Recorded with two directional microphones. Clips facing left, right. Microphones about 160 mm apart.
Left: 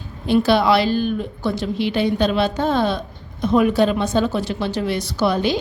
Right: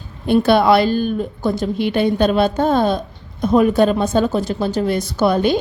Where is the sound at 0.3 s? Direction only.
50° right (ahead or behind).